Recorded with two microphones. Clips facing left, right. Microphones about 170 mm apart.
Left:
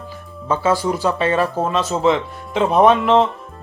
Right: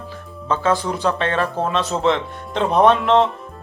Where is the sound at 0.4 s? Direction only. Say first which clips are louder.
Left 2 dB; 10° left (ahead or behind).